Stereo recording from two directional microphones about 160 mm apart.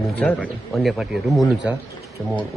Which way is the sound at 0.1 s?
10° left (ahead or behind).